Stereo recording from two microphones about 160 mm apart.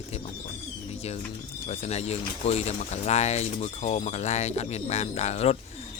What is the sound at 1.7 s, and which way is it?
Speech, 40° left (ahead or behind).